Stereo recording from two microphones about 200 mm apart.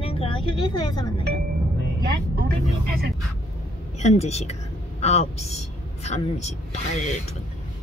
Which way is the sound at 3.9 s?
35° left (ahead or behind).